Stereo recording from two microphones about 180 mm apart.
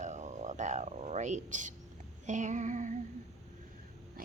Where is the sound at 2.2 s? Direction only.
45° right (ahead or behind).